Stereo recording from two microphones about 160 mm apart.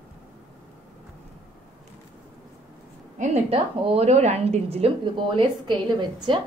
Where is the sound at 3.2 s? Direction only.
40° right (ahead or behind).